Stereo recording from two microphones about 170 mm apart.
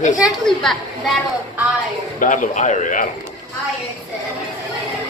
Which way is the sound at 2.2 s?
50° left (ahead or behind).